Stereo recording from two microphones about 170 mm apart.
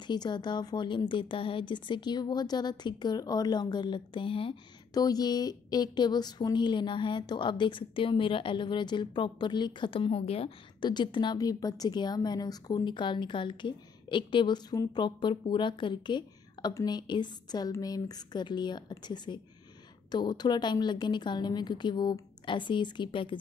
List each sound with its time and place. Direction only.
0.0 s speech: 25° left (ahead or behind)